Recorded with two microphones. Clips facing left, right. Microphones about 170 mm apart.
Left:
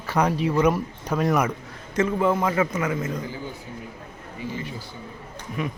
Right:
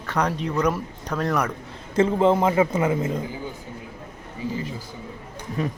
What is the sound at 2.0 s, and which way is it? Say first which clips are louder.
A man's voice: right 3 dB; 25° right (ahead or behind).